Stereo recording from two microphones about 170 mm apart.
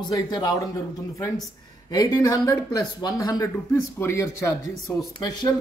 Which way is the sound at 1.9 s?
20° left (ahead or behind).